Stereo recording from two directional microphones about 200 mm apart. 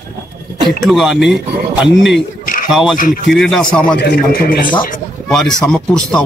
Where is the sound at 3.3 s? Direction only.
Centre (ahead or behind).